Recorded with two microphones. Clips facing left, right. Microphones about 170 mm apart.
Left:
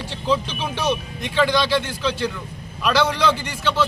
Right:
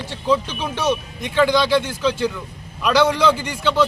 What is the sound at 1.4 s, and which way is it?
A man's voice, 10° right (ahead or behind).